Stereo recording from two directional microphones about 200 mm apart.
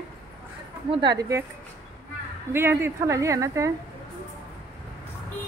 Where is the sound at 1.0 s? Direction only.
20° right (ahead or behind).